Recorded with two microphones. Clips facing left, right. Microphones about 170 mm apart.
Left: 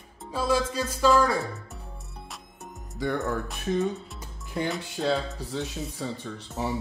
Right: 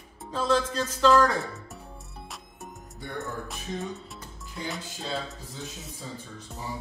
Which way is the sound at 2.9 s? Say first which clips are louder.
Left 8 dB; 90° left.